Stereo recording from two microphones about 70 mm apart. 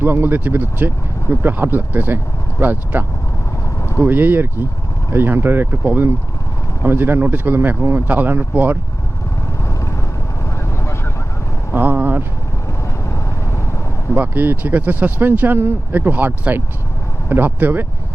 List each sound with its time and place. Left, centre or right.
0.0 s speech: right
11.7 s vehicle: right
14.2 s speech: right